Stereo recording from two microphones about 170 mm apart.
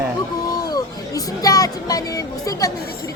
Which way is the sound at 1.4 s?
20° left (ahead or behind).